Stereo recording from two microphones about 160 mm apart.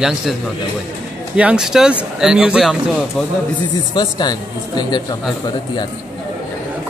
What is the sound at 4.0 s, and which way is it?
Speech, 25° left (ahead or behind).